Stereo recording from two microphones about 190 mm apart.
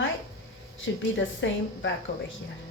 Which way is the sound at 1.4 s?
70° left (ahead or behind).